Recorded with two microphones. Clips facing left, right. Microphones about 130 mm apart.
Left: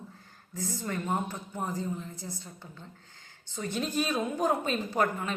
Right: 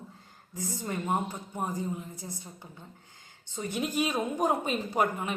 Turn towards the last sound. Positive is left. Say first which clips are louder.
# even
turn(degrees=-15)  # may be behind; listen again after turning